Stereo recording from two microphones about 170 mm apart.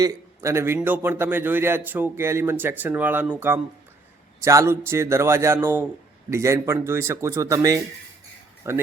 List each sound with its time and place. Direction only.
0.0 s a man's voice: 15° right (ahead or behind)